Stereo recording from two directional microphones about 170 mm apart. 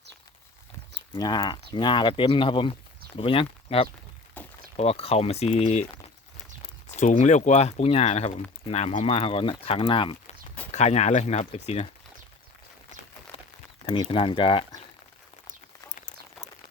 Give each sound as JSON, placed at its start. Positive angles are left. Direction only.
{"t": 1.1, "sound": "speech", "side_deg": 25}
{"t": 4.4, "sound": "a sound", "side_deg": 10}
{"t": 4.8, "sound": "speech", "side_deg": 35}
{"t": 6.9, "sound": "speech", "side_deg": 45}
{"t": 10.7, "sound": "speech", "side_deg": 40}
{"t": 13.3, "sound": "a sound", "side_deg": 35}
{"t": 13.8, "sound": "speech", "side_deg": 30}